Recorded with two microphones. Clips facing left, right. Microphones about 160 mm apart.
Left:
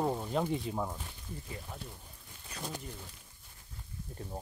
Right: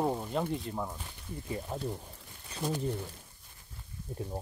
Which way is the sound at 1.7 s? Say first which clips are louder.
Right 11 dB; 40° right (ahead or behind).